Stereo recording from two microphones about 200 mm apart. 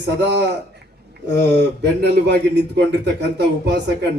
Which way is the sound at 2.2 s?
60° right (ahead or behind).